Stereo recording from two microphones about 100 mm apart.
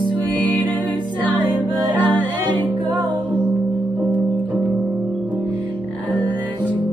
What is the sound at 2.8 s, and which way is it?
Music, 50° right (ahead or behind).